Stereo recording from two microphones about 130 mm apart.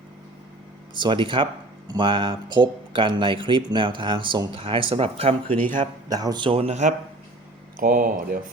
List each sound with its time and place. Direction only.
0.9 s speech: 40° right (ahead or behind)
6.1 s speech: 30° right (ahead or behind); by 6.9 s 60° right (ahead or behind)
7.8 s speech: 90° right